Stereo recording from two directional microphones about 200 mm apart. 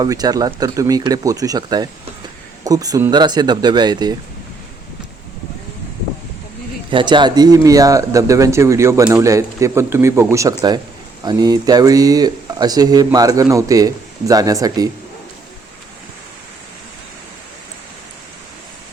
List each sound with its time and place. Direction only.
0.0 s speech: 20° right (ahead or behind)
6.9 s speech: 25° right (ahead or behind)